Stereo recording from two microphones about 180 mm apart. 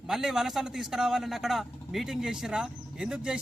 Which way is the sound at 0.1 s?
Centre (ahead or behind).